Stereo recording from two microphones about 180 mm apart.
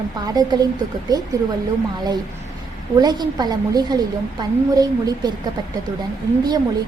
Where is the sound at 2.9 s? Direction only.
20° right (ahead or behind).